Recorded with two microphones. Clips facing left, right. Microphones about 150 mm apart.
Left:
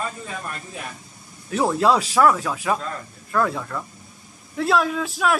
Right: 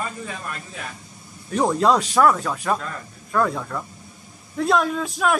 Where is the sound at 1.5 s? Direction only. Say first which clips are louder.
Even; 5° left (ahead or behind).